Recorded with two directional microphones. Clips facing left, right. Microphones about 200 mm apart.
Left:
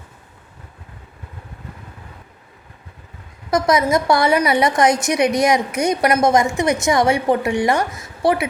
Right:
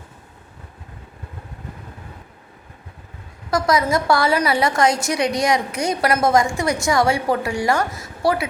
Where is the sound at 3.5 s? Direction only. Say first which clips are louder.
Left 2 dB; 20° left (ahead or behind).